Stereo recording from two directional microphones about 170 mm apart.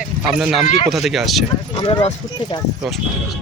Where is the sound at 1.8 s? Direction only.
35° left (ahead or behind).